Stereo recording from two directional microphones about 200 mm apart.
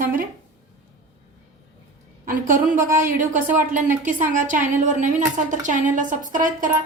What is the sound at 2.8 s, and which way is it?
A woman's voice, 45° right (ahead or behind).